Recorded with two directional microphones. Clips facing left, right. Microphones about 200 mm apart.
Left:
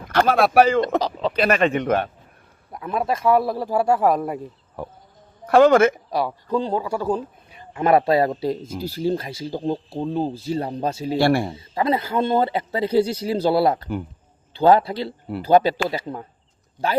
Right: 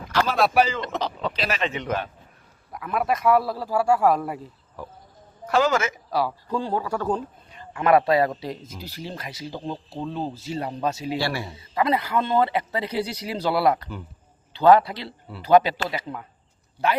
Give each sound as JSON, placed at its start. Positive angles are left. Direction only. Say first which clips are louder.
{"t": 0.1, "sound": "speech", "louder": "left 4 dB", "side_deg": 55}
{"t": 2.7, "sound": "speech", "louder": "left 1 dB", "side_deg": 30}
{"t": 4.8, "sound": "speech", "louder": "left 5 dB", "side_deg": 60}
{"t": 6.1, "sound": "speech", "louder": "left 2 dB", "side_deg": 20}
{"t": 7.7, "sound": "speech", "louder": "left 1 dB", "side_deg": 25}
{"t": 11.2, "sound": "a man's voice", "louder": "left 9 dB", "side_deg": 55}
{"t": 11.5, "sound": "speech", "louder": "left 1 dB", "side_deg": 30}